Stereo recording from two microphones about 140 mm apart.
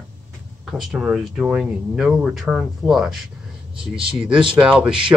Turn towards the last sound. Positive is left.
turn(degrees=-5)  # may be behind; listen again after turning